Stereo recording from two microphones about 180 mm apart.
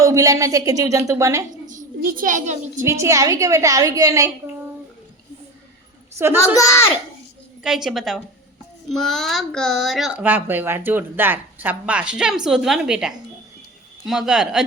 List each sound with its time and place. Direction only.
0.0 s a woman's voice: 20° right (ahead or behind)
1.6 s a child's voice: 45° right (ahead or behind)
2.8 s a woman's voice: 15° right (ahead or behind)
6.1 s a woman's voice: 15° right (ahead or behind)
6.4 s a child's voice: 15° left (ahead or behind)
7.6 s speech: 5° right (ahead or behind)